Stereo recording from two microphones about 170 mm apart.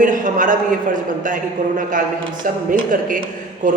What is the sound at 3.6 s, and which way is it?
Speech, 50° right (ahead or behind).